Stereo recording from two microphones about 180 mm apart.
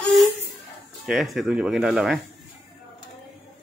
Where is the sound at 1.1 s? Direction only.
Centre (ahead or behind).